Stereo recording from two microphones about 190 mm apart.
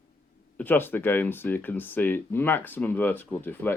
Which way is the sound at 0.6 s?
10° left (ahead or behind).